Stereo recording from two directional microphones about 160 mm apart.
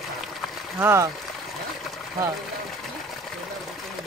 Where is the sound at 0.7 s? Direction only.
15° right (ahead or behind).